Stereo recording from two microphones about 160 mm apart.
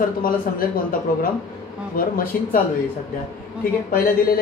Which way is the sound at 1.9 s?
60° left (ahead or behind).